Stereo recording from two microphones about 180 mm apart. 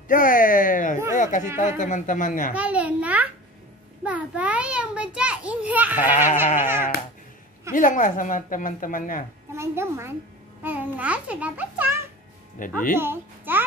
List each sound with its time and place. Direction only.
0.1 s a sound: 50° left (ahead or behind)
1.8 s speech: 45° left (ahead or behind)
2.5 s a child's voice: 10° right (ahead or behind)
7.7 s speech: 45° left (ahead or behind)
9.6 s a woman's voice: 15° right (ahead or behind)
12.6 s speech: 50° left (ahead or behind)
12.9 s a child's voice: 10° right (ahead or behind)